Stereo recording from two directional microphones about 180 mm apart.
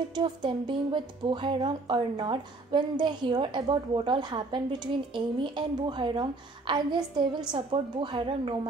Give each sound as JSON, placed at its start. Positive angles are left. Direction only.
{"t": 0.1, "sound": "speech", "side_deg": -25}